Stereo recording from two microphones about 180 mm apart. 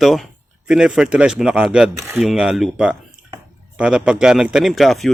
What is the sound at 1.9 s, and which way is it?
Speech, 15° right (ahead or behind).